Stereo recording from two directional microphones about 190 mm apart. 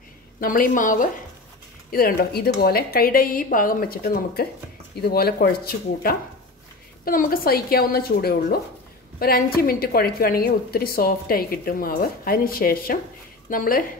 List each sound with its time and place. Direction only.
0.4 s a woman's voice: 45° left (ahead or behind)